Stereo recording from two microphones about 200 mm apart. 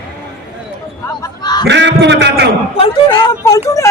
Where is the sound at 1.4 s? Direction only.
20° left (ahead or behind).